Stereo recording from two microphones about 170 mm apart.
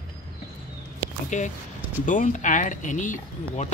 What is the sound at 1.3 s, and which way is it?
Speech, 45° left (ahead or behind).